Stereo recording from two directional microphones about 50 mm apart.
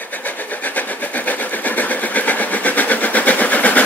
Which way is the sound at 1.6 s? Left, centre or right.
Left.